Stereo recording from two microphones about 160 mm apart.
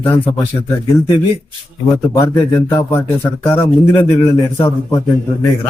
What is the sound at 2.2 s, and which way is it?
A man's voice, 15° left (ahead or behind).